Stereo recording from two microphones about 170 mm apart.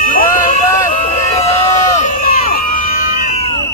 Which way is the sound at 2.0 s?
55° left (ahead or behind).